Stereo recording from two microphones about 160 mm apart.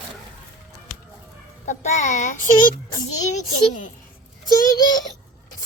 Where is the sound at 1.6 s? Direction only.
45° left (ahead or behind).